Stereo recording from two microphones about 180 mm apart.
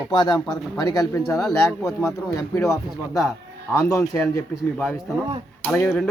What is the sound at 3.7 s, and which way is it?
Speech, 15° left (ahead or behind).